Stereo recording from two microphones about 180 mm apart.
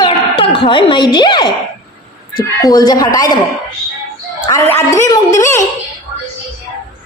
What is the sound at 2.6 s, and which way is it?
Speech, 20° left (ahead or behind).